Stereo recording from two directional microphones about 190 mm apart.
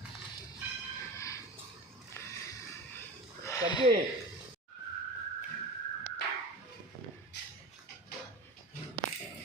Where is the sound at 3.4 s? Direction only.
20° left (ahead or behind).